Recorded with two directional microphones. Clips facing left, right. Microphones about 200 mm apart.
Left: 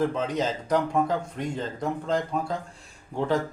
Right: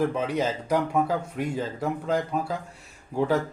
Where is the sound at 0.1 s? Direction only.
10° right (ahead or behind).